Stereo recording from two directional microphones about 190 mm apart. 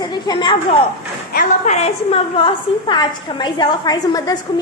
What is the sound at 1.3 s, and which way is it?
A woman's voice, 40° left (ahead or behind).